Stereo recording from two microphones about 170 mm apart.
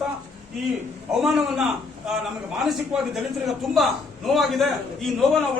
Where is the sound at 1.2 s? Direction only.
Centre (ahead or behind).